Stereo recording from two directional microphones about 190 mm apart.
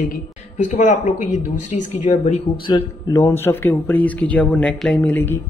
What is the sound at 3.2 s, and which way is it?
Speech, 10° left (ahead or behind).